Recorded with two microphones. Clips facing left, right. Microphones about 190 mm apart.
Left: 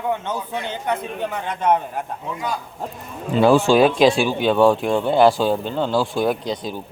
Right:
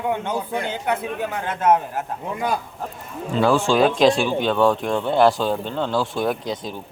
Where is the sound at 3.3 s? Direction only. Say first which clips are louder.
Left 4 dB; 15° left (ahead or behind); by 6.8 s centre (ahead or behind).